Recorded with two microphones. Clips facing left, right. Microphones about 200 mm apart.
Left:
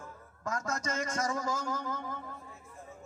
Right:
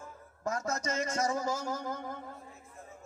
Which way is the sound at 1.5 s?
35° right (ahead or behind).